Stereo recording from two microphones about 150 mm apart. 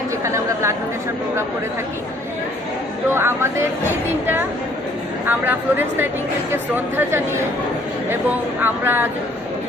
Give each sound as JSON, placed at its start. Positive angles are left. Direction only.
{"t": 0.3, "sound": "speech", "side_deg": -20}
{"t": 3.1, "sound": "speech", "side_deg": -15}
{"t": 5.2, "sound": "speech", "side_deg": -15}